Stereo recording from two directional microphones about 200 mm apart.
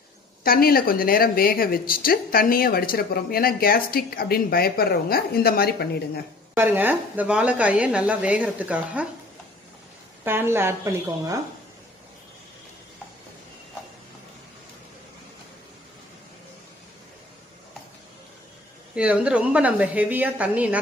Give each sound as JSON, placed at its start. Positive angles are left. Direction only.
{"t": 0.4, "sound": "a woman's voice", "side_deg": 50}
{"t": 6.5, "sound": "speech", "side_deg": -10}
{"t": 10.2, "sound": "speech", "side_deg": -10}
{"t": 18.9, "sound": "speech", "side_deg": -5}